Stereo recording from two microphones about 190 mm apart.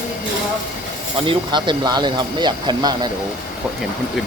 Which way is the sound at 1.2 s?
25° right (ahead or behind).